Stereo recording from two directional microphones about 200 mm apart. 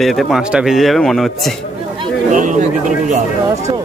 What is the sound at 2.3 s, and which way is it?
Speech, 40° right (ahead or behind).